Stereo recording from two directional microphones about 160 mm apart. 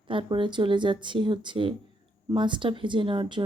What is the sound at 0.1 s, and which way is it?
A woman's voice, 30° right (ahead or behind).